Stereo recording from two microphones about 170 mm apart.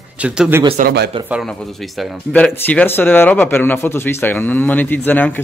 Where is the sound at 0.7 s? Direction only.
65° right (ahead or behind).